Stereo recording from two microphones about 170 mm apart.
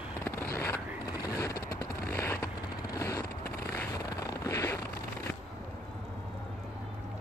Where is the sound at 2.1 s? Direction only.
15° left (ahead or behind).